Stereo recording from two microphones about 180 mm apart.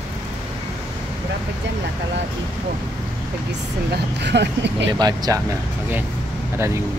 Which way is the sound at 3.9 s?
70° right (ahead or behind).